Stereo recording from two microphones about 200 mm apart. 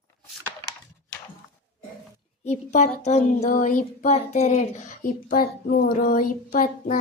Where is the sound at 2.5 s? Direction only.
35° left (ahead or behind).